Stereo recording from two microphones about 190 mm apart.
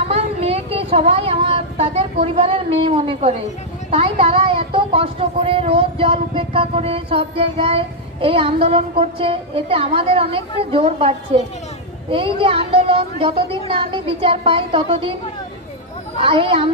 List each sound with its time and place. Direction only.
0.1 s speech: 30° right (ahead or behind)
16.2 s speech: 30° right (ahead or behind)